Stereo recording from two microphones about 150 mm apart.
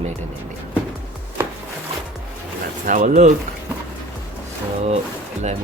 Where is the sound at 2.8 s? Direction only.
60° right (ahead or behind).